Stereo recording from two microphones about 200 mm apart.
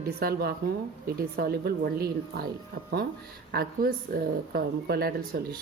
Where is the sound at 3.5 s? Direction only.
50° right (ahead or behind).